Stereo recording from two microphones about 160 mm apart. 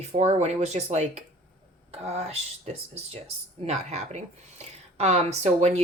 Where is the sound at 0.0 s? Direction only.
40° right (ahead or behind).